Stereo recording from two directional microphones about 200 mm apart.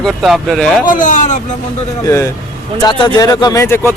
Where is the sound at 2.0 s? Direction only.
15° left (ahead or behind).